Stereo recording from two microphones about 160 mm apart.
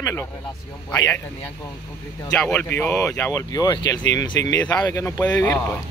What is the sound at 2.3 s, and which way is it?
Speech, 10° left (ahead or behind).